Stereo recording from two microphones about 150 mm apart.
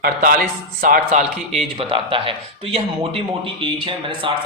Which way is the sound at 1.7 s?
35° right (ahead or behind).